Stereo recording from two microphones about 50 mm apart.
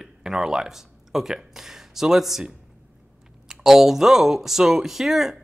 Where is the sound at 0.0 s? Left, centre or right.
Centre.